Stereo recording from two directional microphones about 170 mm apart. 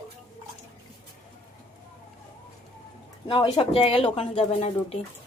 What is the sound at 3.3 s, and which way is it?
Speech, 30° left (ahead or behind).